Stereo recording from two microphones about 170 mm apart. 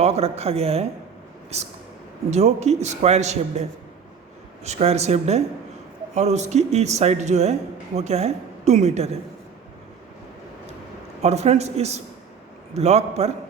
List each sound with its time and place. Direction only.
0.0 s a man's voice: 35° right (ahead or behind)
11.2 s a man's voice: 40° right (ahead or behind)